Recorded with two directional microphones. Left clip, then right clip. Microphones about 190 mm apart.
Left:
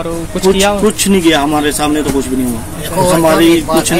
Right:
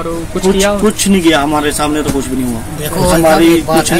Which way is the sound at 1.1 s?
Centre (ahead or behind).